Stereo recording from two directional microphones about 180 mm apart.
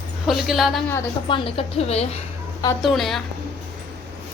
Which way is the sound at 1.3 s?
30° left (ahead or behind).